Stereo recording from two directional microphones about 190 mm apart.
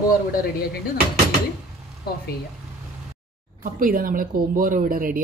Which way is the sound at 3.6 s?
45° right (ahead or behind).